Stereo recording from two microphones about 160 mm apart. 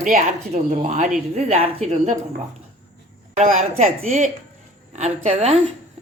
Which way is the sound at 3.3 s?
50° right (ahead or behind).